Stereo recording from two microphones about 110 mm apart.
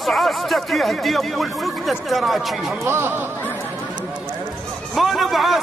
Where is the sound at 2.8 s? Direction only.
20° right (ahead or behind).